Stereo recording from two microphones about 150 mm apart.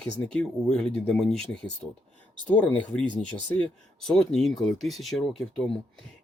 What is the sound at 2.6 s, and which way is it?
Speech, 10° left (ahead or behind).